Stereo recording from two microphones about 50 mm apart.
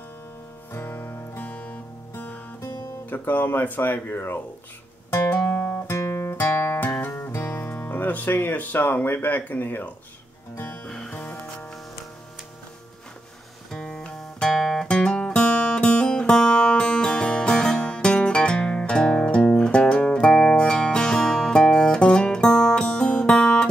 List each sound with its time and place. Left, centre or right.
0.8 s music: left
3.1 s speech: left
5.3 s guitar: left
5.9 s music: left
6.3 s music: left
10.9 s music: centre
13.7 s guitar: centre
14.9 s music: centre